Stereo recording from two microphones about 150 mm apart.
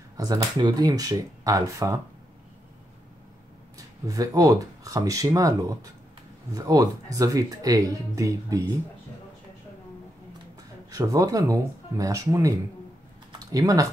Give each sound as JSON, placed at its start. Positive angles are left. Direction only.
{"t": 0.2, "sound": "speech", "side_deg": -25}
{"t": 3.7, "sound": "speech", "side_deg": -25}
{"t": 10.9, "sound": "speech", "side_deg": -25}